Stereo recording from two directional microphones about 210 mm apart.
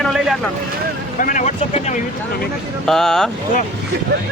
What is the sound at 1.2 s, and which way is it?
Speech, 35° left (ahead or behind).